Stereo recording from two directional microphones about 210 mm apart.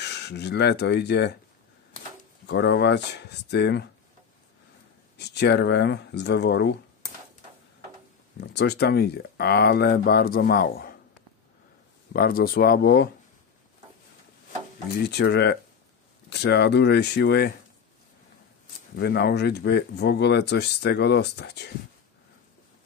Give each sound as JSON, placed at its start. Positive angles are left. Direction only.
{"t": 0.0, "sound": "speech", "side_deg": 55}
{"t": 2.4, "sound": "speech", "side_deg": 55}
{"t": 5.1, "sound": "speech", "side_deg": 55}
{"t": 8.4, "sound": "speech", "side_deg": 50}
{"t": 12.1, "sound": "speech", "side_deg": 45}
{"t": 15.0, "sound": "speech", "side_deg": 50}
{"t": 18.9, "sound": "speech", "side_deg": 50}